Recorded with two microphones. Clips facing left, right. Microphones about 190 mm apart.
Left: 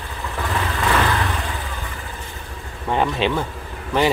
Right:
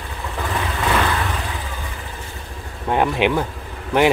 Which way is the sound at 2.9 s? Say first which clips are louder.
Right 2 dB; 15° right (ahead or behind).